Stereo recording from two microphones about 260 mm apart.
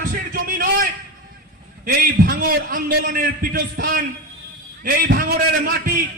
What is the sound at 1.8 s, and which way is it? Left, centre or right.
A man's voice, right.